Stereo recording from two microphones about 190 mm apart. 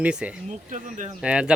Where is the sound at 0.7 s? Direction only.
40° right (ahead or behind).